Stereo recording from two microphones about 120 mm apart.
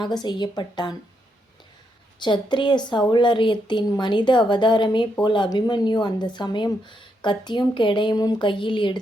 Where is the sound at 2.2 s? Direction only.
40° left (ahead or behind).